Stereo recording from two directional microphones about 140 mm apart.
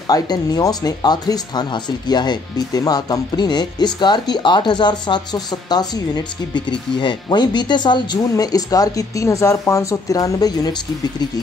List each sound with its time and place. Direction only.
0.1 s speech: 25° left (ahead or behind)